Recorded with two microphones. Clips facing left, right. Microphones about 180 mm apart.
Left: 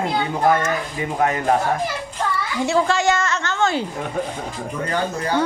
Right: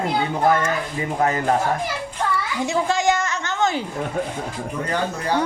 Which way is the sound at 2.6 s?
15° right (ahead or behind).